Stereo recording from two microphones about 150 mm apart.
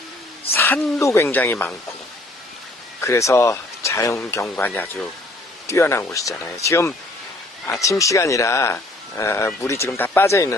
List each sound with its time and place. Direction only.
0.5 s a woman's voice: 15° left (ahead or behind)
3.0 s a woman's voice: 20° left (ahead or behind)